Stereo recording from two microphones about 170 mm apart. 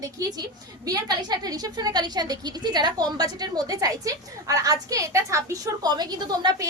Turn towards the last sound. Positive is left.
turn(degrees=-25)  # may be behind; listen again after turning